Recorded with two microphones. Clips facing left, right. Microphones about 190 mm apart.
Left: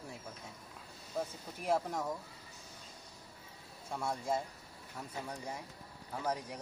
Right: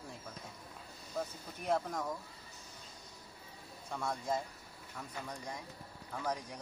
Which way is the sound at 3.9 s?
10° left (ahead or behind).